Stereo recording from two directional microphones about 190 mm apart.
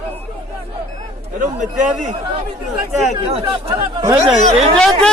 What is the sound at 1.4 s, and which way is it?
Speech, 40° right (ahead or behind).